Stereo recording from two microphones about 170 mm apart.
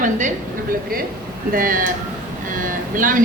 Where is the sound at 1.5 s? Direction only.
55° right (ahead or behind).